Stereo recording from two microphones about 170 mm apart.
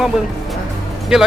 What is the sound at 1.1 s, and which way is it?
Speech, 5° right (ahead or behind).